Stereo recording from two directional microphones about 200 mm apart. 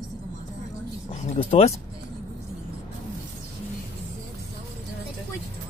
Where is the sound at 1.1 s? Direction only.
30° left (ahead or behind).